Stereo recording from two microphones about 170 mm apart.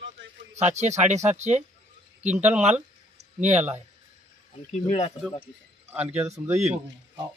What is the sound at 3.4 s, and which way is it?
Speech, 40° right (ahead or behind).